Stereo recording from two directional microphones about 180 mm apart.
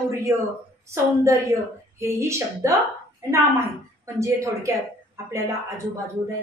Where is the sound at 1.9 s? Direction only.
15° right (ahead or behind).